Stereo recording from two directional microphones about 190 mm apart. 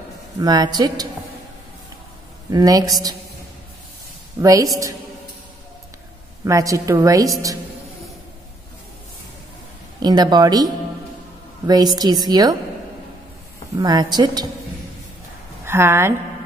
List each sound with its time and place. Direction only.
0.4 s a woman's voice: 20° right (ahead or behind)
2.5 s a woman's voice: 20° right (ahead or behind)
4.4 s a woman's voice: 15° right (ahead or behind)
6.4 s a woman's voice: 15° right (ahead or behind)
10.0 s a woman's voice: 20° right (ahead or behind)
13.7 s a woman's voice: 20° right (ahead or behind)
15.6 s a woman's voice: 15° right (ahead or behind)